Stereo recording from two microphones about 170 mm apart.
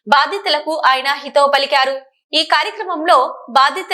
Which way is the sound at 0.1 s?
Centre (ahead or behind).